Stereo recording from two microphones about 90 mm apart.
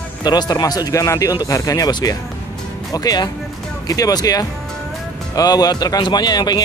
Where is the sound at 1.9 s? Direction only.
50° left (ahead or behind).